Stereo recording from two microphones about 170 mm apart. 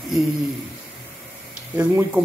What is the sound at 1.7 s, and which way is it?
Speech, 15° right (ahead or behind).